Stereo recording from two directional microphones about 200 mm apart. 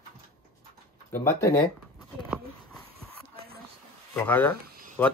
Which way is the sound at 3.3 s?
50° right (ahead or behind).